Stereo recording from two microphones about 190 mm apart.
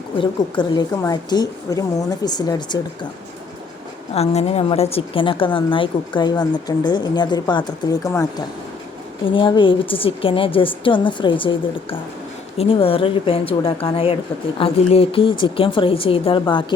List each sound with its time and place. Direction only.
0.2 s a woman's voice: 25° left (ahead or behind)
4.1 s a woman's voice: 35° left (ahead or behind); by 8.4 s 15° left (ahead or behind)
9.2 s a woman's voice: 25° left (ahead or behind)